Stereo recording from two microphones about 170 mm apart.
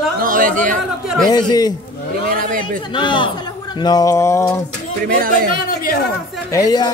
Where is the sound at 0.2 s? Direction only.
50° right (ahead or behind).